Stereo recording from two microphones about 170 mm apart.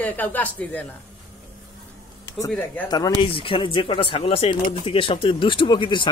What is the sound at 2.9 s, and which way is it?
Speech, 30° left (ahead or behind).